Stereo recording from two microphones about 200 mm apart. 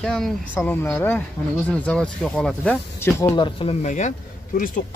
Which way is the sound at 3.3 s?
25° left (ahead or behind).